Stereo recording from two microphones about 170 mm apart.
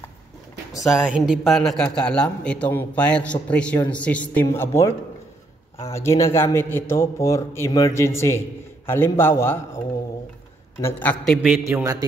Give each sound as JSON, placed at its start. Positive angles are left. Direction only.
{"t": 0.7, "sound": "a man's voice", "side_deg": -5}
{"t": 10.8, "sound": "a man's voice", "side_deg": 10}
{"t": 11.6, "sound": "a man's voice", "side_deg": -20}